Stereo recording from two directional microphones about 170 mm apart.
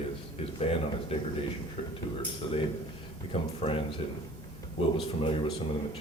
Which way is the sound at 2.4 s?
30° left (ahead or behind).